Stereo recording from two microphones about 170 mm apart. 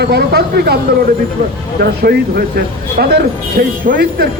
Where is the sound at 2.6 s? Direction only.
70° right (ahead or behind).